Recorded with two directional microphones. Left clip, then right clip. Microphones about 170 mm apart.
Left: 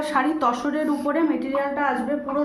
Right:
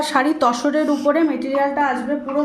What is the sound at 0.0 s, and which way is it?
A woman's voice, 50° right (ahead or behind).